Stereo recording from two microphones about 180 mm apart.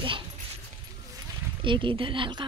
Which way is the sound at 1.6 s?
30° right (ahead or behind).